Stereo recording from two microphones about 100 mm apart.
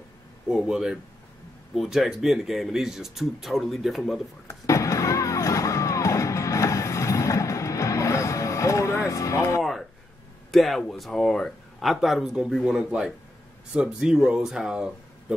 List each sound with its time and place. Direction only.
0.5 s speech: 5° right (ahead or behind)
4.5 s music: 30° left (ahead or behind)
9.6 s a sound: centre (ahead or behind)
10.5 s speech: centre (ahead or behind)